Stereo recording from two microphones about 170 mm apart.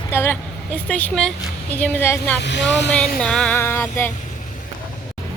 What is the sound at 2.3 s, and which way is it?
Speech, 90° left.